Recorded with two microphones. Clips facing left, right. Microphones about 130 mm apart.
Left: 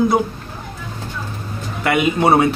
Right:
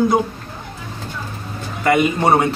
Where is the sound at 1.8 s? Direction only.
5° left (ahead or behind).